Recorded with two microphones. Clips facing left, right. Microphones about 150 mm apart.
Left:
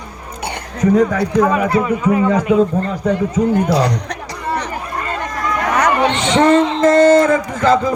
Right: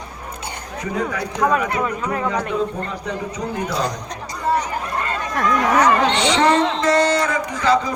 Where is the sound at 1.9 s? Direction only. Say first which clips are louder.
Left 8 dB; 5° left (ahead or behind).